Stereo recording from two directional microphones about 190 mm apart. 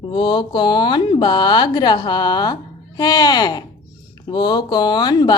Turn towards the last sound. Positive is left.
turn(degrees=20)  # may be behind; listen again after turning